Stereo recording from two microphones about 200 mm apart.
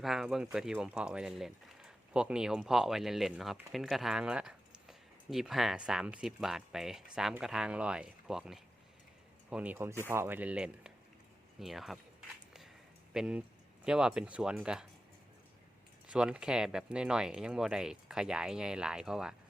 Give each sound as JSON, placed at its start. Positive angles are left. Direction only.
{"t": 0.0, "sound": "speech", "side_deg": 0}
{"t": 13.1, "sound": "speech", "side_deg": -5}
{"t": 16.0, "sound": "speech", "side_deg": -5}